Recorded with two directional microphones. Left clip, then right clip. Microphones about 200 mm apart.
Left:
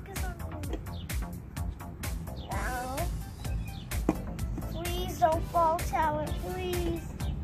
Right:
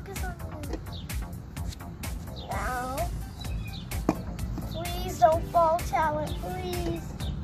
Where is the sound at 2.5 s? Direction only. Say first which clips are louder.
Right 3 dB; centre (ahead or behind).